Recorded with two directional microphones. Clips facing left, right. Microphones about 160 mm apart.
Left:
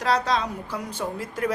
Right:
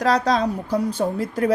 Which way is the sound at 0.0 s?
40° right (ahead or behind).